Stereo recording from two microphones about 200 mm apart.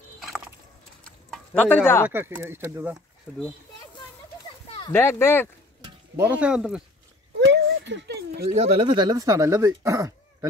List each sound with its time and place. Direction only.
1.0 s a sound: 5° left (ahead or behind)
2.0 s speech: 10° right (ahead or behind)
4.9 s speech: 10° left (ahead or behind)
5.8 s speech: 10° right (ahead or behind)
7.3 s dog: 60° right (ahead or behind)
8.5 s speech: 30° right (ahead or behind)